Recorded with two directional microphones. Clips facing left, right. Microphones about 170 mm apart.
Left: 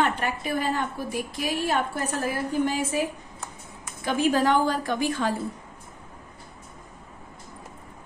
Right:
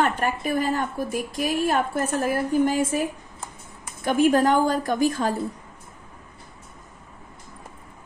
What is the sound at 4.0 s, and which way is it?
A woman's voice, 50° right (ahead or behind).